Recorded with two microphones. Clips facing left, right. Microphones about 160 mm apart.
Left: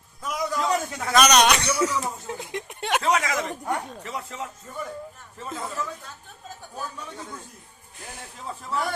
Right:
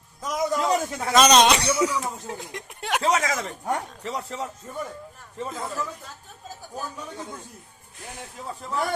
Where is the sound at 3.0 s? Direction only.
35° right (ahead or behind).